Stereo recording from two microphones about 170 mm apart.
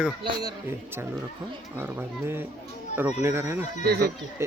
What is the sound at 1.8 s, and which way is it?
Speech, 10° right (ahead or behind).